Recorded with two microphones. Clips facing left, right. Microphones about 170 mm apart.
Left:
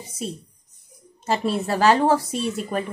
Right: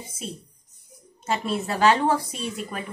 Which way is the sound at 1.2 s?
35° left (ahead or behind).